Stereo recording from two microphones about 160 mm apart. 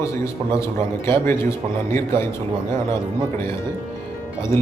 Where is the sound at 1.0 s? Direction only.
15° left (ahead or behind).